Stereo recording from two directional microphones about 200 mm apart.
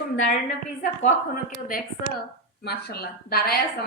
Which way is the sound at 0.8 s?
45° left (ahead or behind).